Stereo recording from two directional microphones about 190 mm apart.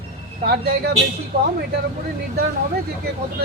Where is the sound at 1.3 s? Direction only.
55° right (ahead or behind).